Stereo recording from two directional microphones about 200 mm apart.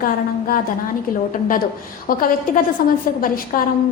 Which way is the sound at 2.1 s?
45° left (ahead or behind).